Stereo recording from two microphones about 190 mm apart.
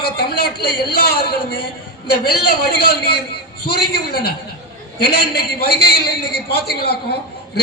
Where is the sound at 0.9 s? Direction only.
55° left (ahead or behind).